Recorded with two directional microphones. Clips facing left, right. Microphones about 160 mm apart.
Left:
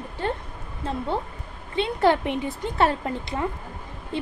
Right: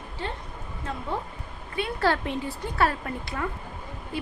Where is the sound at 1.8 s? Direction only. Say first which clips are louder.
Left 5 dB; 20° left (ahead or behind).